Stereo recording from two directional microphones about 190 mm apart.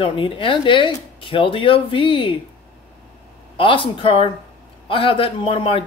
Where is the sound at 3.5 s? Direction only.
30° left (ahead or behind).